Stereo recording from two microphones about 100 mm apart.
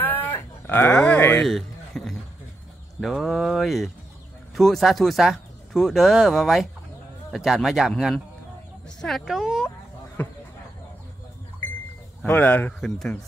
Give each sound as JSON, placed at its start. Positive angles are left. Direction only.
{"t": 0.0, "sound": "a sound", "side_deg": 20}
{"t": 0.9, "sound": "speech", "side_deg": 10}
{"t": 1.4, "sound": "a sound", "side_deg": 5}
{"t": 3.0, "sound": "speech", "side_deg": 0}
{"t": 9.2, "sound": "speech", "side_deg": -5}
{"t": 12.3, "sound": "speech", "side_deg": 20}
{"t": 12.8, "sound": "speech", "side_deg": 5}